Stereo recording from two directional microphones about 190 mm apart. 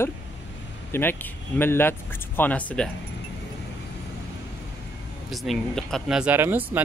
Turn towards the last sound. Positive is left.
turn(degrees=-10)  # may be behind; listen again after turning